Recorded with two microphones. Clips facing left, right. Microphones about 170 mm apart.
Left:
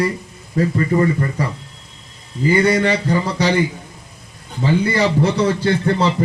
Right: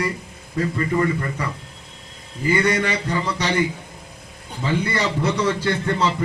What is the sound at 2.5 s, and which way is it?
A man's voice, 35° left (ahead or behind).